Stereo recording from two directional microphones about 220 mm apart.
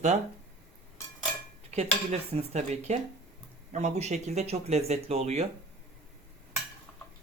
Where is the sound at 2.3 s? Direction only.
30° right (ahead or behind).